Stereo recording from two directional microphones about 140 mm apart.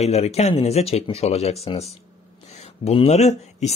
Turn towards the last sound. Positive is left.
turn(degrees=50)  # may be behind; listen again after turning